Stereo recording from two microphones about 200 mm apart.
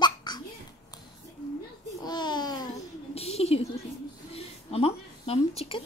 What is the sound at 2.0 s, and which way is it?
Speech, 20° left (ahead or behind).